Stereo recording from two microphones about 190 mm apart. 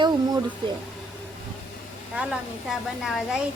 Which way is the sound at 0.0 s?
20° right (ahead or behind).